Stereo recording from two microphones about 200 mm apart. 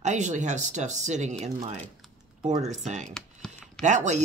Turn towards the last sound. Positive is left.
turn(degrees=-35)  # may be behind; listen again after turning